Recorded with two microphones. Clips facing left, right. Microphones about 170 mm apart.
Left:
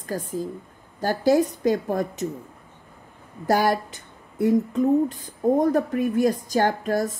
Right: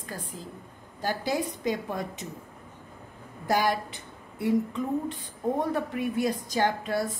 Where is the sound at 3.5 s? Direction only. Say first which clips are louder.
Left 5 dB; 45° left (ahead or behind).